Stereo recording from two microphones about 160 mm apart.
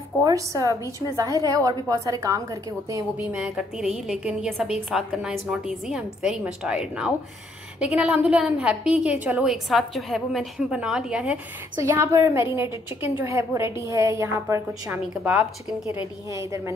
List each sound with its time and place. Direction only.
0.2 s a woman's voice: 20° right (ahead or behind)
3.3 s a woman's voice: 5° right (ahead or behind)
11.8 s a woman's voice: 15° right (ahead or behind)
14.9 s speech: 10° right (ahead or behind)
16.3 s a woman's voice: 20° right (ahead or behind)